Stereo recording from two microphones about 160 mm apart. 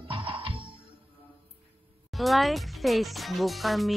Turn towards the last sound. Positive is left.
turn(degrees=0)  # may be behind; listen again after turning